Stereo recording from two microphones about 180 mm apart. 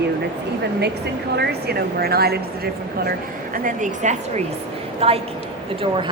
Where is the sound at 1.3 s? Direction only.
65° right (ahead or behind).